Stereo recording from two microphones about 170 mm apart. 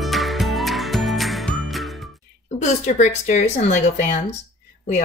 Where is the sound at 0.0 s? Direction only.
Centre (ahead or behind).